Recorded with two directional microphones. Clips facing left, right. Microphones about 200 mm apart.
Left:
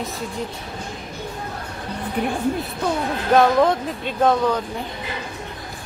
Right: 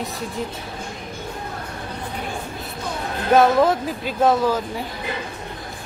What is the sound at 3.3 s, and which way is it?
Speech, 5° right (ahead or behind).